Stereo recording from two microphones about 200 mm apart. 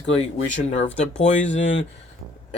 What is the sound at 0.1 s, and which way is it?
Speech, 30° left (ahead or behind).